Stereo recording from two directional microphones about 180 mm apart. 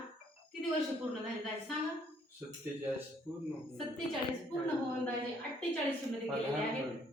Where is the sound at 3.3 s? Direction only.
5° right (ahead or behind).